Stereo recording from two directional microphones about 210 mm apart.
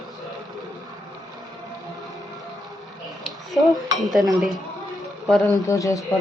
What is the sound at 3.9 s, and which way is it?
Speech, centre (ahead or behind).